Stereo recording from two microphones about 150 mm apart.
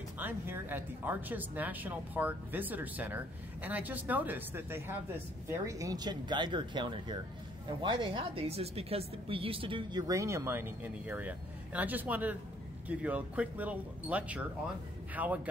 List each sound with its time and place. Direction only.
0.2 s speech: 15° right (ahead or behind)